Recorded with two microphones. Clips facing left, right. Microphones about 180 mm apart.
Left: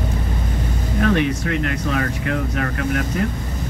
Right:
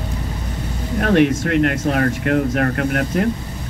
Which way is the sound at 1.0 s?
55° right (ahead or behind).